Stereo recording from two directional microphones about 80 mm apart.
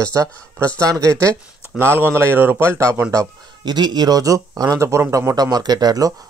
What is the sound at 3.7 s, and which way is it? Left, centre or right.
Speech, right.